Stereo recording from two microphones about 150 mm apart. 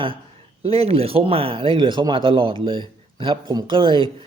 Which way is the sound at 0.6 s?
40° right (ahead or behind).